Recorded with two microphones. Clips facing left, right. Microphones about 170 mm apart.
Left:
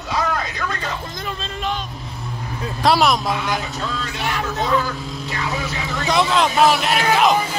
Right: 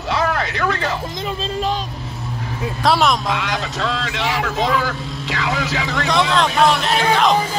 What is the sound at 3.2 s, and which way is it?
A man's voice, 90° right.